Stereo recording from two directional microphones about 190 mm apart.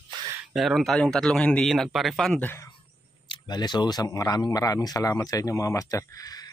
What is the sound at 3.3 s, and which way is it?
Speech, 20° left (ahead or behind).